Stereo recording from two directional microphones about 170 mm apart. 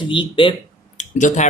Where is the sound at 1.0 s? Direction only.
45° left (ahead or behind).